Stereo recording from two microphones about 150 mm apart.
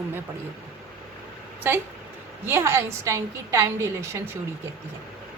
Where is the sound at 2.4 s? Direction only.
15° right (ahead or behind).